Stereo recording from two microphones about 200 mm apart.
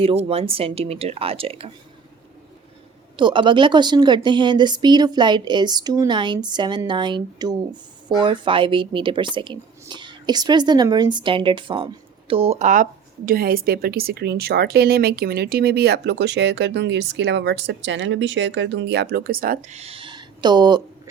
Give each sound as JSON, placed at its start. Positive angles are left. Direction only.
{"t": 0.0, "sound": "speech", "side_deg": -30}
{"t": 3.2, "sound": "speech", "side_deg": -25}